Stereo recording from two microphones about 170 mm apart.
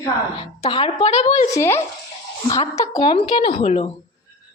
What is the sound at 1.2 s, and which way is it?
A woman's voice, 15° left (ahead or behind).